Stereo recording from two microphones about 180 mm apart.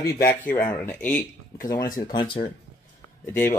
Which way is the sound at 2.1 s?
25° left (ahead or behind).